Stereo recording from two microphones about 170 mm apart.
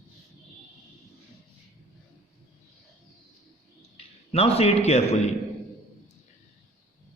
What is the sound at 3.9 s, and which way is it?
A man's voice, 35° left (ahead or behind).